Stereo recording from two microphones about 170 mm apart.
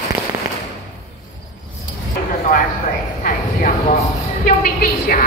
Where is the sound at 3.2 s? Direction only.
50° left (ahead or behind).